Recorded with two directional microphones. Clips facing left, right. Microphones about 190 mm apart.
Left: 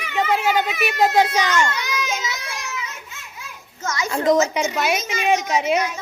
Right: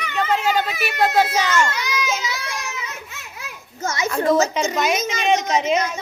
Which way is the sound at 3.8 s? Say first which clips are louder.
Right 2 dB; 25° right (ahead or behind).